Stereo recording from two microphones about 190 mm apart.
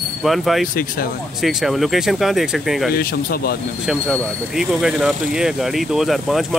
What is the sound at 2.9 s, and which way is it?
Speech, 55° left (ahead or behind).